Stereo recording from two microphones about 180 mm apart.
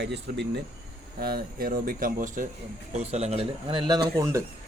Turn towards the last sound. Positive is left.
turn(degrees=-15)  # may be behind; listen again after turning